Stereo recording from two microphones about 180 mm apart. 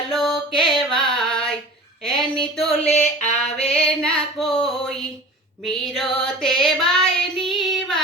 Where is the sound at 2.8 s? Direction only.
40° left (ahead or behind).